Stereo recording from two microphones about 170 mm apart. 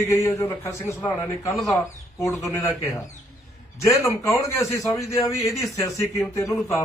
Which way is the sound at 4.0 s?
15° left (ahead or behind).